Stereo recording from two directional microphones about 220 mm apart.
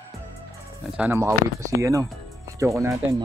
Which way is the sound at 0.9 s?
10° right (ahead or behind).